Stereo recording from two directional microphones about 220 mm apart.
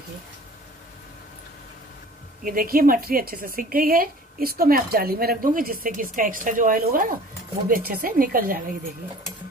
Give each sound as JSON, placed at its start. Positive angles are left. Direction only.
{"t": 2.4, "sound": "speech", "side_deg": -40}